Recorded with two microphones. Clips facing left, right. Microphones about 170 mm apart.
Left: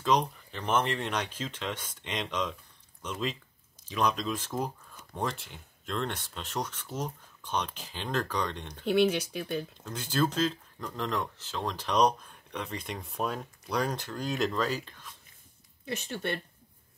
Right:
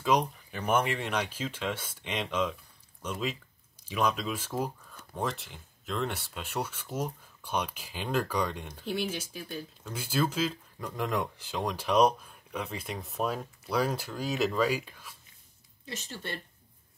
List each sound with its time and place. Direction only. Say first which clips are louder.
0.0 s speech: even; 10° right (ahead or behind)
8.8 s speech: left 8 dB; 65° left (ahead or behind)
9.8 s speech: even; 10° right (ahead or behind)
15.9 s speech: left 6 dB; 60° left (ahead or behind)